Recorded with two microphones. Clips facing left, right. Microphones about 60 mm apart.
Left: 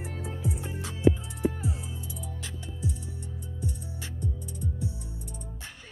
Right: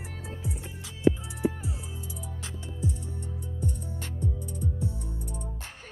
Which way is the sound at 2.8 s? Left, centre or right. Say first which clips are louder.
Right 2 dB; right.